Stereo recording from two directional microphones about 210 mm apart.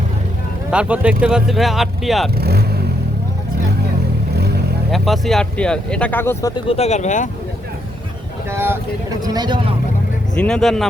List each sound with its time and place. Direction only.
0.7 s speech: 5° right (ahead or behind)
2.4 s speech: 50° right (ahead or behind)
4.4 s vehicle: 50° right (ahead or behind)
4.9 s speech: centre (ahead or behind)
6.7 s speech: 30° left (ahead or behind)
8.4 s speech: 10° right (ahead or behind)
10.3 s speech: 5° left (ahead or behind)